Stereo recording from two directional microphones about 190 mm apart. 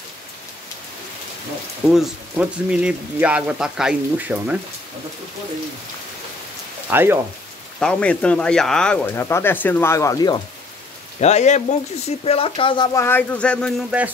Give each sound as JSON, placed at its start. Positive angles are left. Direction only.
{"t": 1.9, "sound": "speech", "side_deg": -5}
{"t": 6.9, "sound": "speech", "side_deg": -10}
{"t": 7.8, "sound": "speech", "side_deg": 5}
{"t": 11.1, "sound": "speech", "side_deg": 35}